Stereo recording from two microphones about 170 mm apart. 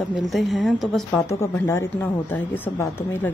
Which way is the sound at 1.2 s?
15° left (ahead or behind).